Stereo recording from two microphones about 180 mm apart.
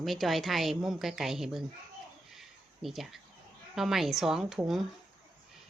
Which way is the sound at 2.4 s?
Centre (ahead or behind).